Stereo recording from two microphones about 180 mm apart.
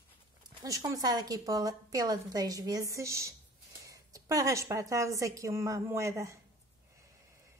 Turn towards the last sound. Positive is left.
turn(degrees=-15)  # may be behind; listen again after turning